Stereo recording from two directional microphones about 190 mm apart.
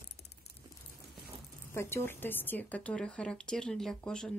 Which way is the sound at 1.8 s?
15° left (ahead or behind).